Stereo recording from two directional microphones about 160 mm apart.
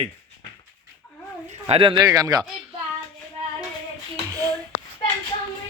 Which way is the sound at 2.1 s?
25° right (ahead or behind).